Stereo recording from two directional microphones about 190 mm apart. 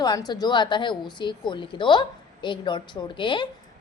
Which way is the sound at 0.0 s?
20° left (ahead or behind).